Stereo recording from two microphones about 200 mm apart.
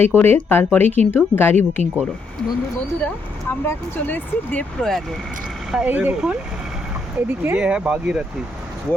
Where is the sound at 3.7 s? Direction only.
10° left (ahead or behind).